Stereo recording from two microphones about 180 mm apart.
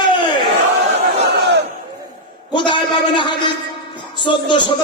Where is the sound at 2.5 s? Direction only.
25° left (ahead or behind).